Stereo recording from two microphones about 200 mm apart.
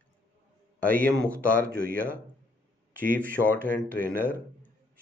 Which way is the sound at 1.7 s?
45° right (ahead or behind).